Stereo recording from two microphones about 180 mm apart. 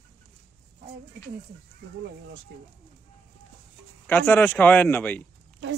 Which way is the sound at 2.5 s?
65° right (ahead or behind).